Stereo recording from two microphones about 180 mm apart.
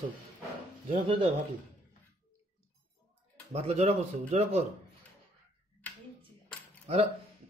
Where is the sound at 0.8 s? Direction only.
45° right (ahead or behind).